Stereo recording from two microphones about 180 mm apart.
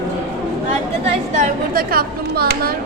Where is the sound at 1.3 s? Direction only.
50° right (ahead or behind).